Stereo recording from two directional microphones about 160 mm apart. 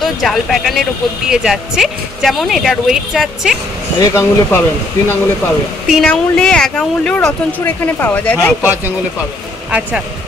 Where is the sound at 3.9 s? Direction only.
15° left (ahead or behind).